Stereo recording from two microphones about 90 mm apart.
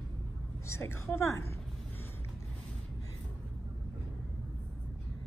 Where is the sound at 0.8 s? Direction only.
30° left (ahead or behind).